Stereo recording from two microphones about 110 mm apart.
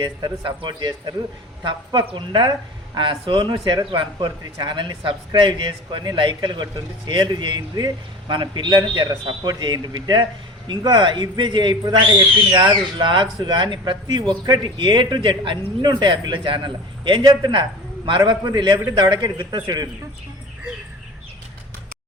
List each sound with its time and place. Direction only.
0.0 s a man's voice: 45° right (ahead or behind)